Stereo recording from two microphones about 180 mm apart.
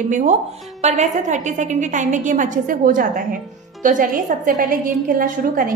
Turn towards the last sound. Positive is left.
turn(degrees=-50)  # may be behind; listen again after turning